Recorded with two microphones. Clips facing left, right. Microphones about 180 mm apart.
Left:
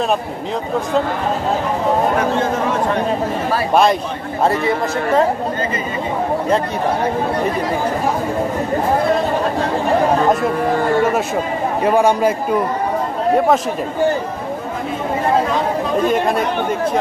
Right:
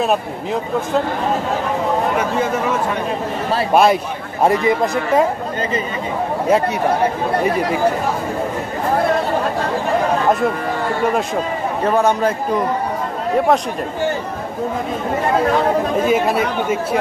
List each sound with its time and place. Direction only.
3.7 s speech: 5° right (ahead or behind)
4.5 s speech: 15° right (ahead or behind)
11.8 s a man's voice: 10° left (ahead or behind)
16.1 s speech: 5° right (ahead or behind)